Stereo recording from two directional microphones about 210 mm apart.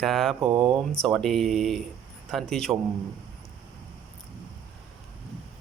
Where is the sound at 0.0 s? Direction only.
Centre (ahead or behind).